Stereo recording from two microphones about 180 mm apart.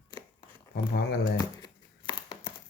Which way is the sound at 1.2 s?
25° left (ahead or behind).